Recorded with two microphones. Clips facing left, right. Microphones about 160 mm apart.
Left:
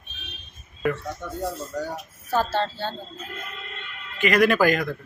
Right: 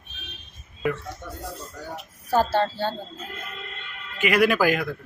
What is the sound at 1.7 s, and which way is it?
Speech, 45° left (ahead or behind).